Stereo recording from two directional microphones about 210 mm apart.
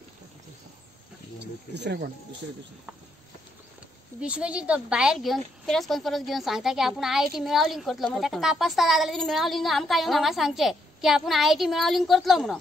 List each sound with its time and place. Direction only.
1.4 s speech: 55° right (ahead or behind)
4.2 s a woman's voice: 5° right (ahead or behind)